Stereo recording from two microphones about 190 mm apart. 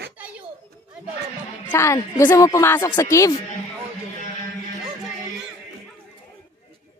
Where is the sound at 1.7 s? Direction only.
15° left (ahead or behind).